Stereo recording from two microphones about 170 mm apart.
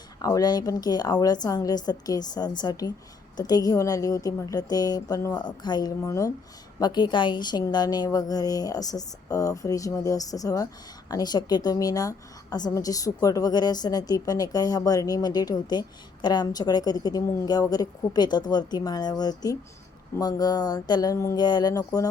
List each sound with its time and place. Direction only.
0.2 s a woman's voice: 20° left (ahead or behind)